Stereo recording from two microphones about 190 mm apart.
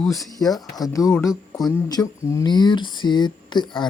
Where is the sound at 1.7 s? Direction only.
15° left (ahead or behind).